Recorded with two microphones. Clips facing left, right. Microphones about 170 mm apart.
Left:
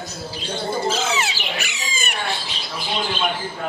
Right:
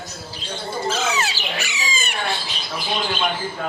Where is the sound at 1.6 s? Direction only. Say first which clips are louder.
Right 2 dB; 55° left (ahead or behind).